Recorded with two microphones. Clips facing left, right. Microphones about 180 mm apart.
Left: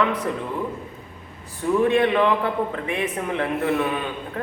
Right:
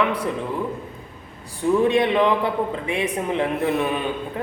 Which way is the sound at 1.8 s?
15° right (ahead or behind).